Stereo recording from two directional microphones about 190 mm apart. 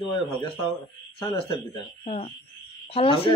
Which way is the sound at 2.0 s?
35° left (ahead or behind).